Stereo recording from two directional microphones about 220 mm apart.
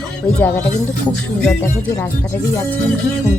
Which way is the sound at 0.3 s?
10° left (ahead or behind).